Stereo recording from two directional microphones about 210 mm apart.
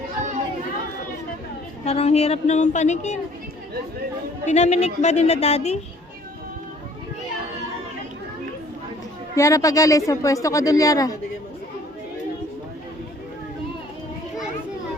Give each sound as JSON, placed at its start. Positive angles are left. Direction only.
{"t": 1.8, "sound": "a woman's voice", "side_deg": 30}
{"t": 4.4, "sound": "a woman's voice", "side_deg": 35}
{"t": 9.3, "sound": "speech", "side_deg": 15}